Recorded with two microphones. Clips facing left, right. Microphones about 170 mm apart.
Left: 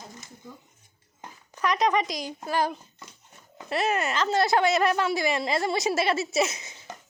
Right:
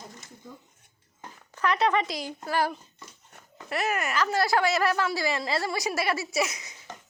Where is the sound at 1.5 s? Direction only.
15° left (ahead or behind).